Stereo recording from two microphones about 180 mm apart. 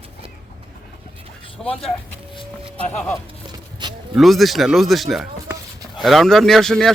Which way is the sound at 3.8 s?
25° right (ahead or behind).